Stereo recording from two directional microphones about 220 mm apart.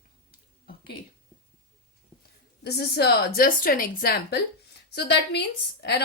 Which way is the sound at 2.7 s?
50° left (ahead or behind).